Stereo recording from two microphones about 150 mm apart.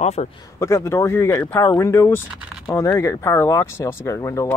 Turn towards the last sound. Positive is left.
turn(degrees=20)  # may be behind; listen again after turning